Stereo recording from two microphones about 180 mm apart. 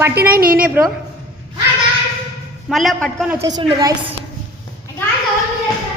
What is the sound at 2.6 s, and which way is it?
Speech, centre (ahead or behind).